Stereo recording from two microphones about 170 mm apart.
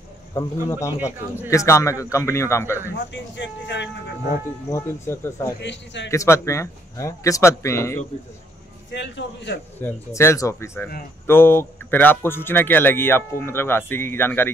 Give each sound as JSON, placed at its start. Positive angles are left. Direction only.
{"t": 0.3, "sound": "a man's voice", "side_deg": 20}
{"t": 3.1, "sound": "speech", "side_deg": 90}
{"t": 4.6, "sound": "speech", "side_deg": 15}
{"t": 5.6, "sound": "speech", "side_deg": 90}
{"t": 6.0, "sound": "speech", "side_deg": 15}
{"t": 8.9, "sound": "speech", "side_deg": 90}
{"t": 9.8, "sound": "speech", "side_deg": 15}